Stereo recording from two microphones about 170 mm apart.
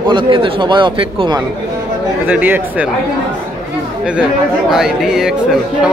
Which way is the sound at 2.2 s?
10° right (ahead or behind).